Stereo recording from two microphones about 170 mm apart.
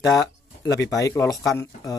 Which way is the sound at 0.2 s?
20° left (ahead or behind).